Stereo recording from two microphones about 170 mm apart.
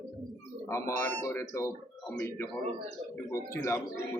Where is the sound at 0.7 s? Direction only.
15° left (ahead or behind).